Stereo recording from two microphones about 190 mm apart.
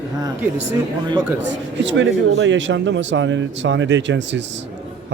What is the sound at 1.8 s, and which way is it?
Speech, 75° right (ahead or behind).